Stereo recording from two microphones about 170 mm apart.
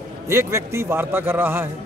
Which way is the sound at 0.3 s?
15° right (ahead or behind).